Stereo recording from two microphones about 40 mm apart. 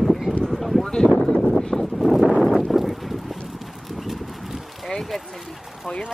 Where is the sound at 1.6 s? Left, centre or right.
Centre.